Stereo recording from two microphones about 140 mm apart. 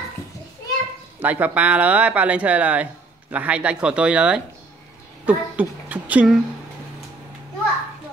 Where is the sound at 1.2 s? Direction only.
10° right (ahead or behind).